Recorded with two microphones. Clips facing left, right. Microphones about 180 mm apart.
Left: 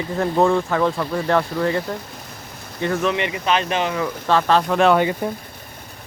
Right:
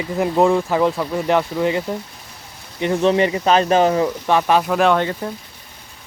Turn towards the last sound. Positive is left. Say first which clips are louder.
# left 2 dB
turn(degrees=10)  # may be behind; listen again after turning